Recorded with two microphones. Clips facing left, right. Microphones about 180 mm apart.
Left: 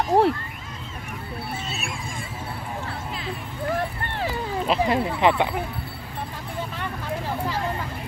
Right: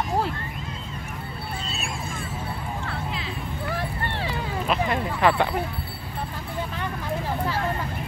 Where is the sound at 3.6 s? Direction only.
45° left (ahead or behind).